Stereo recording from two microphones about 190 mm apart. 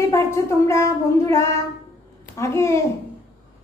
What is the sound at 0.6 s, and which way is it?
Child singing, 15° left (ahead or behind).